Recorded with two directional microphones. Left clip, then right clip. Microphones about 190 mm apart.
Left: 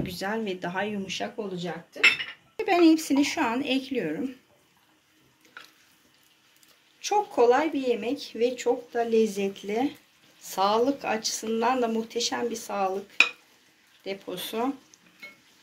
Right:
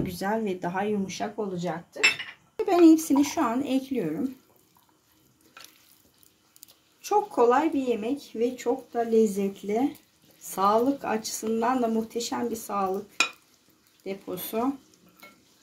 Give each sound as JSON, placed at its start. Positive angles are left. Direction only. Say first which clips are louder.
{"t": 0.0, "sound": "speech", "louder": "right 2 dB", "side_deg": -50}
{"t": 2.6, "sound": "a woman's voice", "louder": "right 2 dB", "side_deg": -40}
{"t": 7.1, "sound": "speech", "louder": "even", "side_deg": -45}
{"t": 14.0, "sound": "speech", "louder": "left 1 dB", "side_deg": -50}